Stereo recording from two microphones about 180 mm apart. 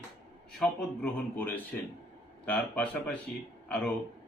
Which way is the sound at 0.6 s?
10° left (ahead or behind).